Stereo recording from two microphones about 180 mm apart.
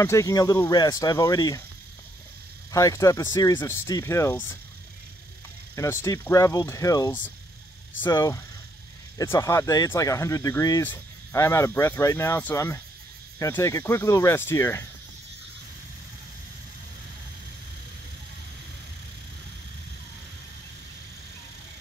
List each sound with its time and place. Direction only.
0.0 s speech: 15° left (ahead or behind)
2.7 s speech: 20° left (ahead or behind)
5.8 s speech: 15° left (ahead or behind)